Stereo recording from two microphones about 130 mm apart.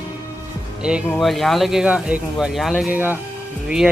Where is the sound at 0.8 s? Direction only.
5° right (ahead or behind).